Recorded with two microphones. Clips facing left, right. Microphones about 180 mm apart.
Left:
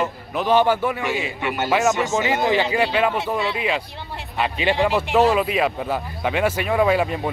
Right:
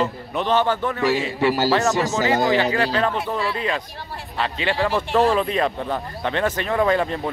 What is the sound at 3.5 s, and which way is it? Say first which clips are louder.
Speech: left 1 dB; 10° left (ahead or behind).